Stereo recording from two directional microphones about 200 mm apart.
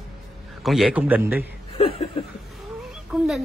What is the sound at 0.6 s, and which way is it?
Speech, centre (ahead or behind).